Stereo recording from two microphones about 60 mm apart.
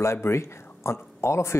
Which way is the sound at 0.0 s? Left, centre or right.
Left.